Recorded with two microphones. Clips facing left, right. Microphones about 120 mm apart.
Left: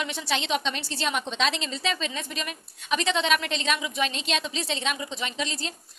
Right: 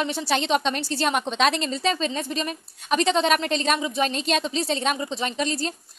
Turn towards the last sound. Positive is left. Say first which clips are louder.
# right 6 dB
turn(degrees=-45)  # may be behind; listen again after turning